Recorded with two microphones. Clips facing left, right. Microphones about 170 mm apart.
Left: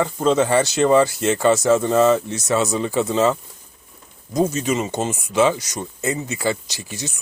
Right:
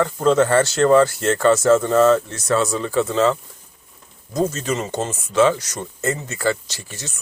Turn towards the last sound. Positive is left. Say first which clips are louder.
# left 4 dB
turn(degrees=15)  # may be behind; listen again after turning